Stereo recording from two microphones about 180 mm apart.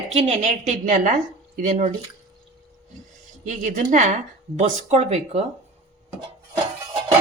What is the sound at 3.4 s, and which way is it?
Speech, 45° right (ahead or behind).